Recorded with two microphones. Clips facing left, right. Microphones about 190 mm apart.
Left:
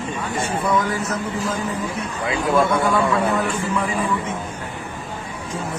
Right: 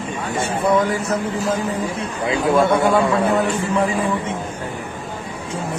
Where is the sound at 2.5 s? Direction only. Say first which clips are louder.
Right 2 dB; 30° right (ahead or behind).